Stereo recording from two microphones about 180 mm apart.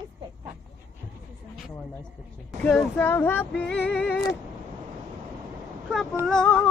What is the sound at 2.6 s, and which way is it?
Speech, 5° left (ahead or behind).